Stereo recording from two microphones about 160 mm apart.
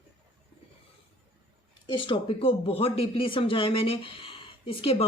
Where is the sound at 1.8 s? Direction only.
30° left (ahead or behind).